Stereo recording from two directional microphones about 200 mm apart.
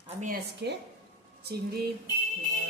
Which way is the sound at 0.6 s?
60° right (ahead or behind).